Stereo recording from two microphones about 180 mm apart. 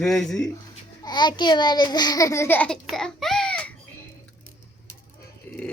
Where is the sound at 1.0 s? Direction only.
25° left (ahead or behind).